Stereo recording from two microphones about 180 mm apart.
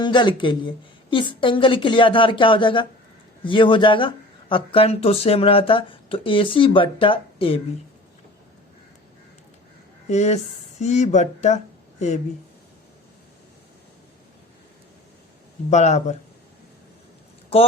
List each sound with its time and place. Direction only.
0.0 s speech: 25° left (ahead or behind)
10.1 s speech: 40° left (ahead or behind)
15.7 s speech: 40° left (ahead or behind)